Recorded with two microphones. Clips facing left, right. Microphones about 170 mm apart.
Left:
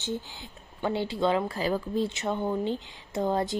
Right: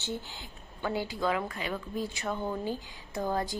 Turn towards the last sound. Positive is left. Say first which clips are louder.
# left 4 dB
turn(degrees=25)  # may be behind; listen again after turning